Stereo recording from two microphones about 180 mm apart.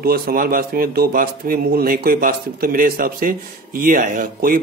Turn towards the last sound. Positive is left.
turn(degrees=-50)  # may be behind; listen again after turning